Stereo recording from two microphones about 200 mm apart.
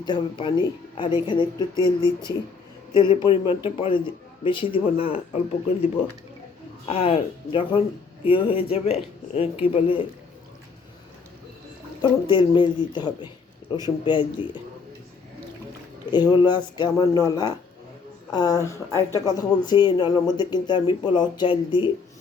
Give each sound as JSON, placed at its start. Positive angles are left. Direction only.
{"t": 0.0, "sound": "speech", "side_deg": 20}
{"t": 12.0, "sound": "speech", "side_deg": 20}
{"t": 16.1, "sound": "speech", "side_deg": 20}